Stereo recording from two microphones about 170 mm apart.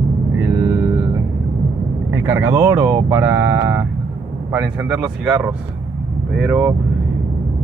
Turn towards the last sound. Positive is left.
turn(degrees=-10)  # may be behind; listen again after turning